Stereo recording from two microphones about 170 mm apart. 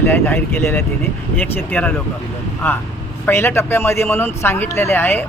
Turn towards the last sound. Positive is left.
turn(degrees=10)  # may be behind; listen again after turning